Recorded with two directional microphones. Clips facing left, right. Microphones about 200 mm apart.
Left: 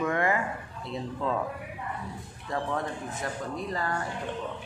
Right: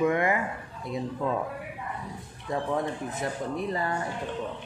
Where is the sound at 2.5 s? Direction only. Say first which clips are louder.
Right 2 dB; 20° right (ahead or behind).